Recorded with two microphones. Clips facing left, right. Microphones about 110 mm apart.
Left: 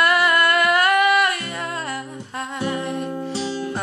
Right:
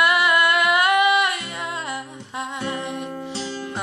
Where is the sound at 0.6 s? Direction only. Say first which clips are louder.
Left 1 dB; 15° right (ahead or behind).